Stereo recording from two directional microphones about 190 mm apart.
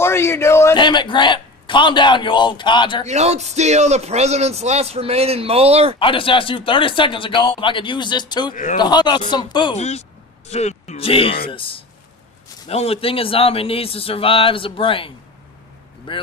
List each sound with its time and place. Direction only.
0.0 s a man's voice: 15° left (ahead or behind)
3.1 s speech: 35° right (ahead or behind)
5.9 s a man's voice: 25° left (ahead or behind)
9.8 s a man's voice: 35° left (ahead or behind)